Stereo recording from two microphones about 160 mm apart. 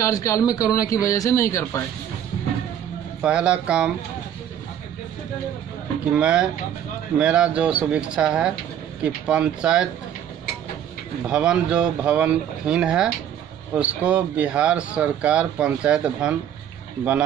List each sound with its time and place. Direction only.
0.0 s a man's voice: 20° left (ahead or behind)
3.2 s speech: 5° right (ahead or behind)
6.1 s speech: 5° right (ahead or behind)
11.2 s speech: 5° right (ahead or behind)